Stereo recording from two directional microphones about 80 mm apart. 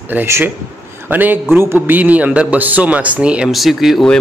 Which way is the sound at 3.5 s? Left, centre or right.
Centre.